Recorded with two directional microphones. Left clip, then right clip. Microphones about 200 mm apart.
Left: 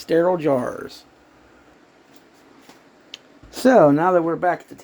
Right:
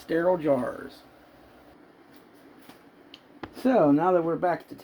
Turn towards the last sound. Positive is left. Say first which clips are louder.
# left 5 dB
turn(degrees=25)  # may be behind; listen again after turning